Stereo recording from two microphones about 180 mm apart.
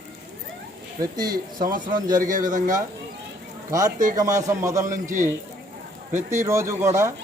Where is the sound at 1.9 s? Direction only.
20° right (ahead or behind).